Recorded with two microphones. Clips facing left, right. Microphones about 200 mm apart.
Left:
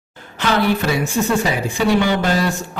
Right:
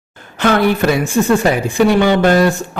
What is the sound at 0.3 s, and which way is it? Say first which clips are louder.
Speech: right 4 dB; 55° right (ahead or behind).